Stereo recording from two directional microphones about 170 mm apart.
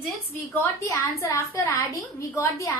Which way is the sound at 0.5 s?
15° left (ahead or behind).